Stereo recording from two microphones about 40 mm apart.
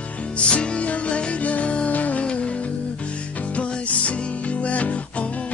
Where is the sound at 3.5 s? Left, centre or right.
Left.